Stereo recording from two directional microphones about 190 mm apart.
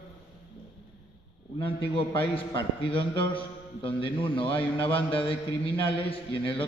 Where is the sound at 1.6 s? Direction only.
25° left (ahead or behind).